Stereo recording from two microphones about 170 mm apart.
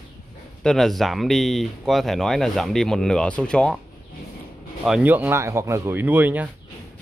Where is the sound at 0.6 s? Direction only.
Centre (ahead or behind).